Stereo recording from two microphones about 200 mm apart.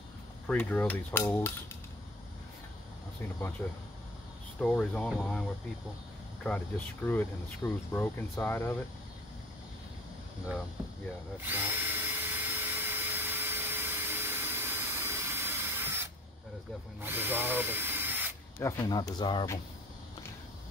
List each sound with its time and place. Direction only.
0.5 s speech: 5° left (ahead or behind)
3.6 s speech: 15° left (ahead or behind)
11.4 s drill: 10° right (ahead or behind)
17.0 s speech: 10° right (ahead or behind)
18.6 s speech: 15° left (ahead or behind)